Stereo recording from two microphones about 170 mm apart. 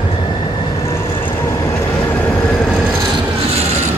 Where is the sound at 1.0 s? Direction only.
30° left (ahead or behind).